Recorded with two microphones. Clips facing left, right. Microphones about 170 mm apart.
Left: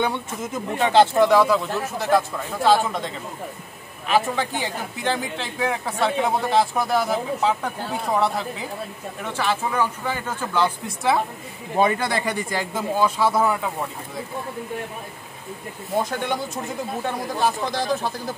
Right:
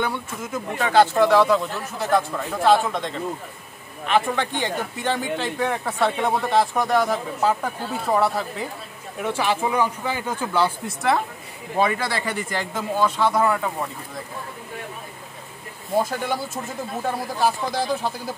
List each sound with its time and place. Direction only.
0.0 s speech: 20° left (ahead or behind)
1.3 s speech: 5° left (ahead or behind)
4.1 s speech: 5° left (ahead or behind); by 11.0 s 10° right (ahead or behind)
11.8 s speech: 20° left (ahead or behind); by 13.8 s 5° left (ahead or behind)
16.0 s speech: 5° right (ahead or behind)